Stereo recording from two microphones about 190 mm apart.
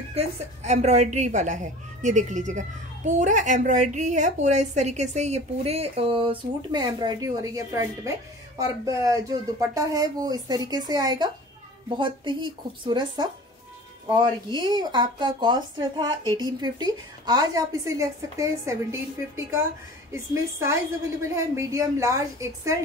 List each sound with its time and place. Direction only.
0.1 s a woman's voice: 35° right (ahead or behind); by 22.8 s 15° right (ahead or behind)